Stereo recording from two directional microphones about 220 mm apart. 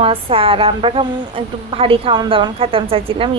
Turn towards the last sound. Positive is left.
turn(degrees=-25)  # may be behind; listen again after turning